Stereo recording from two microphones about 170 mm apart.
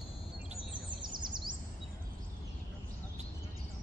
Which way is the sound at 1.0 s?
25° right (ahead or behind).